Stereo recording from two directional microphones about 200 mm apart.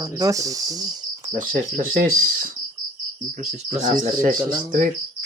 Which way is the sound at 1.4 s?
45° right (ahead or behind).